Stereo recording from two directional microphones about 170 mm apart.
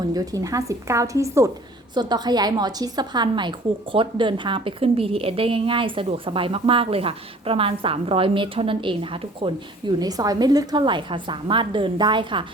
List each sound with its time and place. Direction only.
0.1 s a woman's voice: 20° right (ahead or behind)